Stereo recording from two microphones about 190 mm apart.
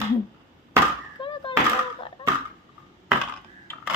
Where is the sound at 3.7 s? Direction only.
10° left (ahead or behind).